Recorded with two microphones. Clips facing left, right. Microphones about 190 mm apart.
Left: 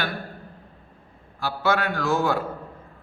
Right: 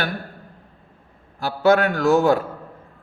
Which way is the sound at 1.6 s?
45° right (ahead or behind).